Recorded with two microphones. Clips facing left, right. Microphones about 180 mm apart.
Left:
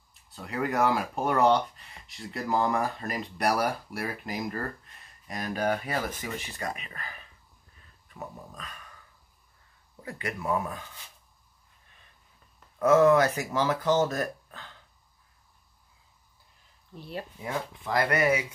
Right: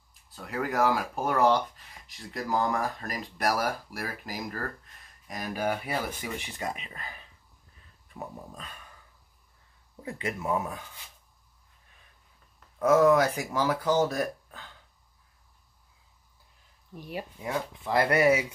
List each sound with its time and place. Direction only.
0.4 s speech: centre (ahead or behind); by 7.2 s 25° right (ahead or behind)
8.5 s speech: 30° right (ahead or behind)
10.0 s speech: 25° right (ahead or behind)
12.7 s speech: 10° right (ahead or behind)
16.9 s speech: 10° right (ahead or behind)
17.8 s speech: 25° right (ahead or behind)